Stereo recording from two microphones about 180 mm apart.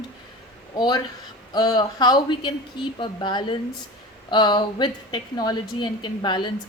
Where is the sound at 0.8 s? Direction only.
25° left (ahead or behind).